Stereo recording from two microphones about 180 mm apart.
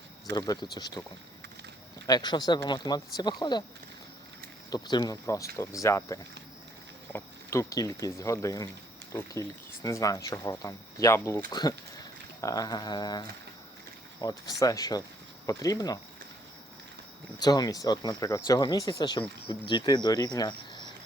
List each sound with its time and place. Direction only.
0.3 s speech: 20° left (ahead or behind)
2.0 s speech: 25° left (ahead or behind)
4.7 s speech: 25° left (ahead or behind)
17.4 s speech: 20° left (ahead or behind)